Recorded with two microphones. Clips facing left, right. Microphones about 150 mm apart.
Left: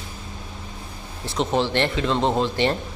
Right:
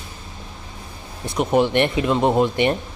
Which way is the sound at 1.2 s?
15° right (ahead or behind).